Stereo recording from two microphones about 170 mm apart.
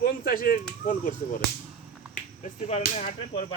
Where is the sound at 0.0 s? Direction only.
55° left (ahead or behind).